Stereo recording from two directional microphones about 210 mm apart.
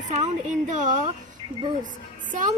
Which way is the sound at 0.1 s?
35° right (ahead or behind).